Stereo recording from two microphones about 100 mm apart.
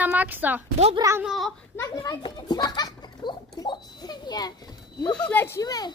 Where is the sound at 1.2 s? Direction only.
Centre (ahead or behind).